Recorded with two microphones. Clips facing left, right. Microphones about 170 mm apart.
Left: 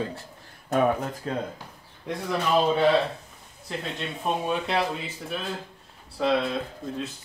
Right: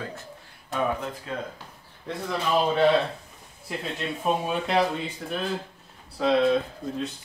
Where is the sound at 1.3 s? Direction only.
40° left (ahead or behind).